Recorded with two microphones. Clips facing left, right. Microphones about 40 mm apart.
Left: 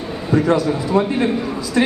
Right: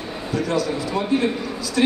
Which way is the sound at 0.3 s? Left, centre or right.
Left.